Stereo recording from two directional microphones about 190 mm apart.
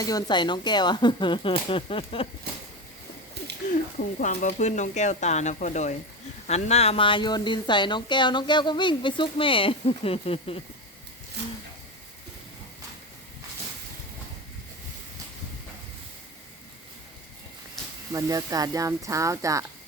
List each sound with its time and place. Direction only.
0.0 s speech: 20° left (ahead or behind)
3.4 s a sound: 60° right (ahead or behind)
4.2 s speech: 45° left (ahead or behind)
11.4 s speech: 60° right (ahead or behind)
18.1 s speech: 20° right (ahead or behind)